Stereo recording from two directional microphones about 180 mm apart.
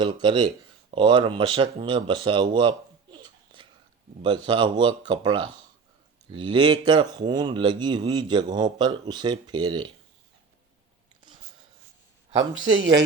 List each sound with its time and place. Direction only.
0.0 s speech: 25° right (ahead or behind)